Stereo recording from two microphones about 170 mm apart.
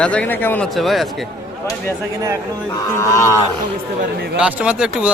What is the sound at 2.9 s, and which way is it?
Speech, 15° left (ahead or behind).